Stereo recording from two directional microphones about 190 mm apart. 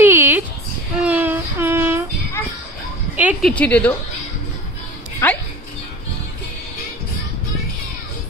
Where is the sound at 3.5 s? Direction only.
5° left (ahead or behind).